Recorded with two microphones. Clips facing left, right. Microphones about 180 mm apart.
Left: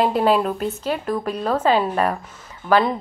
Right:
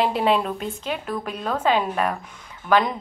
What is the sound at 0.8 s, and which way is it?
A woman's voice, 40° left (ahead or behind).